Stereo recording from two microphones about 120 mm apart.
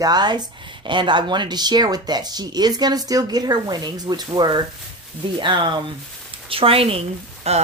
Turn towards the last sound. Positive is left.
turn(degrees=-55)  # may be behind; listen again after turning